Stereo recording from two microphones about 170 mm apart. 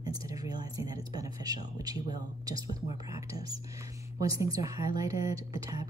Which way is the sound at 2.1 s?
20° right (ahead or behind).